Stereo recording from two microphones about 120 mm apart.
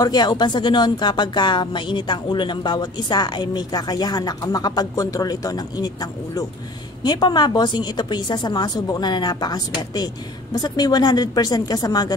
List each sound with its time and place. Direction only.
0.0 s speech: 35° left (ahead or behind)
7.0 s speech: 35° left (ahead or behind)